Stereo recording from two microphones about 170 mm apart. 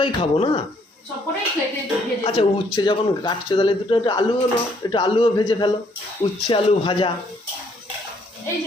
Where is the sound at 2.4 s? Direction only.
35° left (ahead or behind).